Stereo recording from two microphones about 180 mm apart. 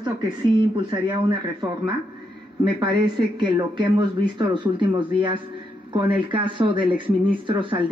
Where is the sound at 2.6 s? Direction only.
25° right (ahead or behind).